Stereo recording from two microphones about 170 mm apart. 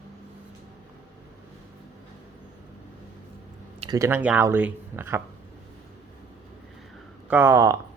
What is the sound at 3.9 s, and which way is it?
Speech, 15° right (ahead or behind).